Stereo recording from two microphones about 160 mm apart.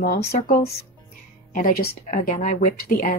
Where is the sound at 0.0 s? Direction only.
75° left (ahead or behind).